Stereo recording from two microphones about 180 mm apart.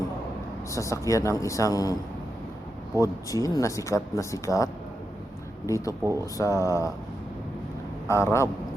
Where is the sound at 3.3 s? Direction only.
20° left (ahead or behind).